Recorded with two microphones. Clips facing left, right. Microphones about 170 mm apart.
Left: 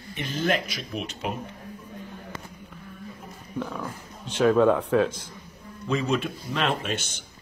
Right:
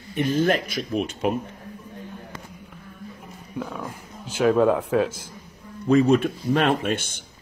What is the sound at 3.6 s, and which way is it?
Speech, 5° right (ahead or behind).